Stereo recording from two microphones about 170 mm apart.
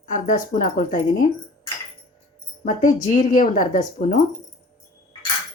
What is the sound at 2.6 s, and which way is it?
Speech, 50° left (ahead or behind).